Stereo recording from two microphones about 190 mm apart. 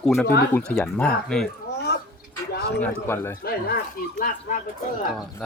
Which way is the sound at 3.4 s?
55° left (ahead or behind).